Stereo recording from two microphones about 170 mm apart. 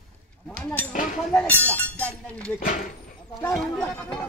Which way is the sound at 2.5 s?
50° left (ahead or behind).